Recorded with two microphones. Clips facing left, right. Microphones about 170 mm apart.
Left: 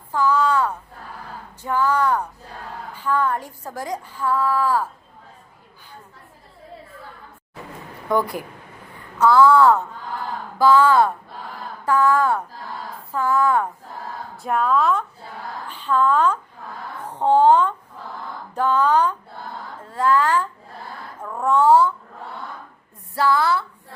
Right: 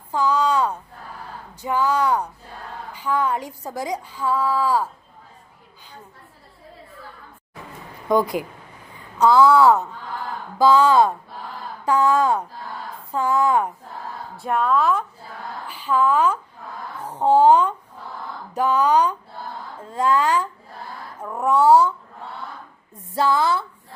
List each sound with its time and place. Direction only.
0.1 s a woman's voice: 15° right (ahead or behind)
8.1 s a woman's voice: 15° right (ahead or behind)
14.3 s a woman's voice: centre (ahead or behind)
23.1 s a woman's voice: 20° right (ahead or behind)